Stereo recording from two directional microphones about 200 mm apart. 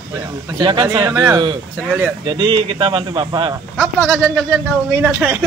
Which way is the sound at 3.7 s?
5° right (ahead or behind).